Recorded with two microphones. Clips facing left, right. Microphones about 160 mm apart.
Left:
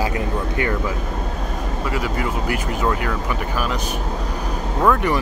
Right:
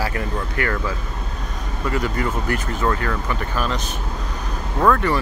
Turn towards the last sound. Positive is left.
turn(degrees=15)  # may be behind; listen again after turning